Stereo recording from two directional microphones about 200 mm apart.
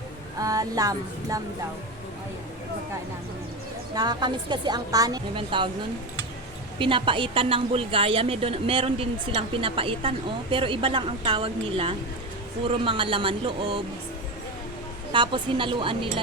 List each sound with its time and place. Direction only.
0.3 s a sound: 15° right (ahead or behind)
3.9 s speech: 20° right (ahead or behind)
6.7 s speech: 25° right (ahead or behind)
15.1 s speech: 25° right (ahead or behind)